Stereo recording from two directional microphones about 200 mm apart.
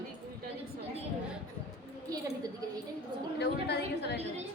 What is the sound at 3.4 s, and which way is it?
Speech, 55° left (ahead or behind).